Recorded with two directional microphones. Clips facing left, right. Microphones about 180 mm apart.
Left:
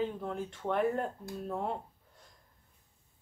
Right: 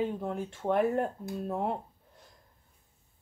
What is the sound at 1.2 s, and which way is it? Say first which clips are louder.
Speech: right 3 dB; 25° right (ahead or behind).